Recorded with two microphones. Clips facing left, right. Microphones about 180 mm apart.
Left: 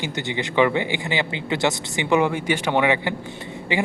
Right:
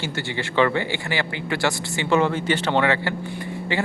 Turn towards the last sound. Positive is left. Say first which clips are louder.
# left 1 dB
turn(degrees=15)  # may be behind; listen again after turning